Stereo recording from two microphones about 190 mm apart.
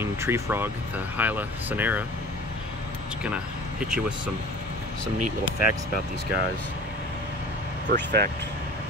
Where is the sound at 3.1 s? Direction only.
5° right (ahead or behind).